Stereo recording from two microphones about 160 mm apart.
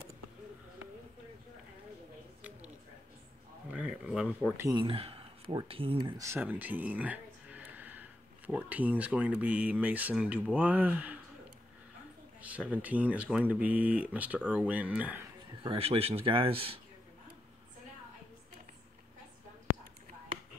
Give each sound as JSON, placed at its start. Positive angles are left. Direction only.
{"t": 3.7, "sound": "speech", "side_deg": -5}
{"t": 4.6, "sound": "speech", "side_deg": -20}
{"t": 4.8, "sound": "speech", "side_deg": -35}
{"t": 6.2, "sound": "a sound", "side_deg": -15}
{"t": 8.5, "sound": "speech", "side_deg": -10}
{"t": 12.4, "sound": "speech", "side_deg": -10}
{"t": 15.6, "sound": "speech", "side_deg": -35}